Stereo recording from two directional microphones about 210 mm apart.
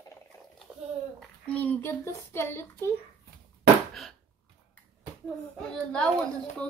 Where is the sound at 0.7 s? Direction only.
5° left (ahead or behind).